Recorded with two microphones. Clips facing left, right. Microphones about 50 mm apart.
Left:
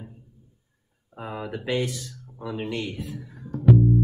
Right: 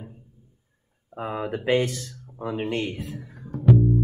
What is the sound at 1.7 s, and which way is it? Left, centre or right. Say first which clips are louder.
Speech: right 4 dB; right.